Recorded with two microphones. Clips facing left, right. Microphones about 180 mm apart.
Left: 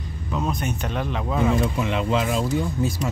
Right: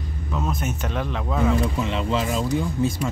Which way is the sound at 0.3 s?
Centre (ahead or behind).